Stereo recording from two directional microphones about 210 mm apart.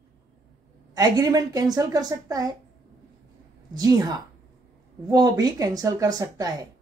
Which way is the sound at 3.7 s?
15° right (ahead or behind).